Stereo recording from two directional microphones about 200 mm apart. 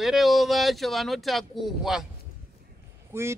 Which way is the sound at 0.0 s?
Centre (ahead or behind).